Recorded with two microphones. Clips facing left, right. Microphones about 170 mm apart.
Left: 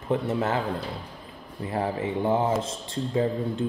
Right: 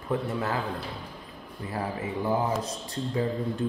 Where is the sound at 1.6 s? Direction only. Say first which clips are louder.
Left 5 dB; 25° left (ahead or behind).